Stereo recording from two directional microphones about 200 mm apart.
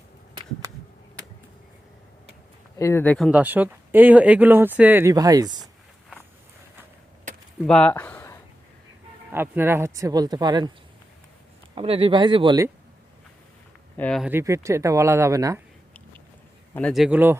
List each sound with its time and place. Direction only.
2.7 s speech: 15° left (ahead or behind); by 5.6 s 20° right (ahead or behind)
7.3 s a sound: 40° right (ahead or behind)
7.6 s speech: 5° left (ahead or behind)
9.3 s speech: 10° right (ahead or behind)
11.7 s speech: 25° right (ahead or behind)
13.9 s speech: 10° left (ahead or behind)
14.2 s speech: 10° right (ahead or behind)
16.7 s a man's voice: centre (ahead or behind)